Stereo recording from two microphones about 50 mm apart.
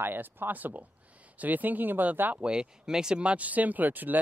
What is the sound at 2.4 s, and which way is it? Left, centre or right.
Speech, centre.